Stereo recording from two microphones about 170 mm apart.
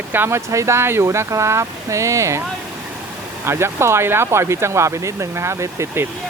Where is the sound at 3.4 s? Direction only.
15° right (ahead or behind).